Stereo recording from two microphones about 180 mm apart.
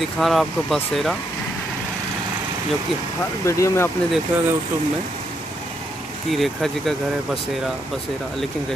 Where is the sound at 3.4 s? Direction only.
15° left (ahead or behind).